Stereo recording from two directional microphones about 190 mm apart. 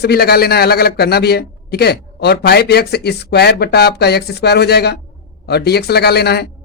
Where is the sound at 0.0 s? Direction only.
55° left (ahead or behind).